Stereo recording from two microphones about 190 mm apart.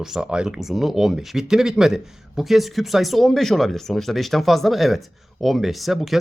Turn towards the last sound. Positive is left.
turn(degrees=0)  # may be behind; listen again after turning